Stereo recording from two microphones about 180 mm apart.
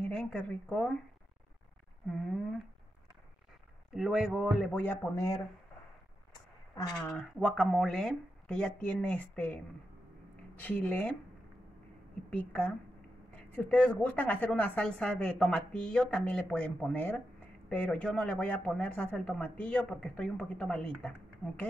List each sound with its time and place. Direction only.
0.0 s a woman's voice: 5° left (ahead or behind)
3.9 s speech: centre (ahead or behind); by 5.4 s 15° left (ahead or behind)
6.7 s speech: 15° left (ahead or behind)
7.1 s speech: 5° left (ahead or behind)
10.6 s a woman's voice: 10° left (ahead or behind)
12.3 s a woman's voice: 10° left (ahead or behind)